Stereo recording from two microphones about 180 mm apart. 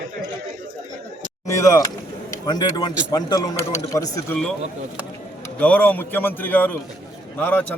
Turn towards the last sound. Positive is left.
turn(degrees=10)  # may be behind; listen again after turning